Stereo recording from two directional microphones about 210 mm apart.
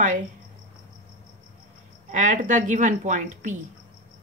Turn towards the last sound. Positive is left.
turn(degrees=-35)  # may be behind; listen again after turning